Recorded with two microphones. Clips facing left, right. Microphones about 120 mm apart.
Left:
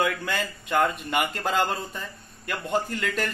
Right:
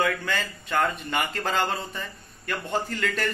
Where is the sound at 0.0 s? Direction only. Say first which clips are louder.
Even; 10° left (ahead or behind).